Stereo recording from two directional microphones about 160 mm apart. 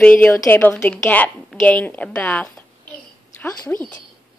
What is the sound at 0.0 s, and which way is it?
A woman's voice, 5° left (ahead or behind).